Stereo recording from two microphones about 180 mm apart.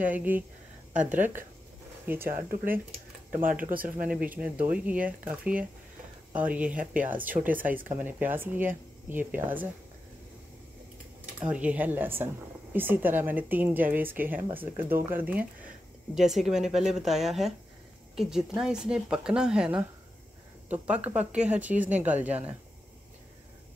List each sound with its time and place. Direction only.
0.0 s speech: 10° right (ahead or behind)
2.0 s speech: 15° right (ahead or behind)
3.3 s speech: 50° right (ahead or behind)
4.1 s speech: 5° right (ahead or behind)
11.3 s speech: 5° right (ahead or behind)